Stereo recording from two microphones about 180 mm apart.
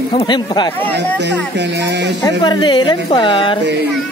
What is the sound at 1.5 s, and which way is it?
Speech, 70° right (ahead or behind).